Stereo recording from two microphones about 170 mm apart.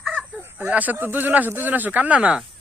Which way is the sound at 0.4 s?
10° right (ahead or behind).